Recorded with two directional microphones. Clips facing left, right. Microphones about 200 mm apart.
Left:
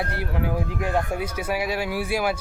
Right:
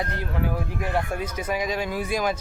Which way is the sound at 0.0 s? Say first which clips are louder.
Left 1 dB; 10° left (ahead or behind).